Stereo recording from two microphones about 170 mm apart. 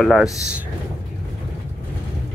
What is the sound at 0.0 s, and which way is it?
Speech, 5° right (ahead or behind).